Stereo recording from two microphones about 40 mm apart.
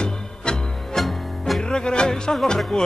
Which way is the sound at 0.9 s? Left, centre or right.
Centre.